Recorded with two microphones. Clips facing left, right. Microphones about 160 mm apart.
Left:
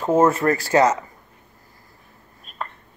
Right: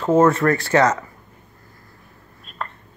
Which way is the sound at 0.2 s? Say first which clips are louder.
Right 1 dB; 30° left (ahead or behind).